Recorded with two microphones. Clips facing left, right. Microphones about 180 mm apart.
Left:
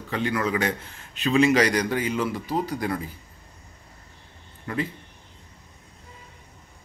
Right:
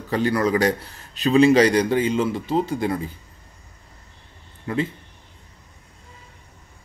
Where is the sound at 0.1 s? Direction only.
35° right (ahead or behind).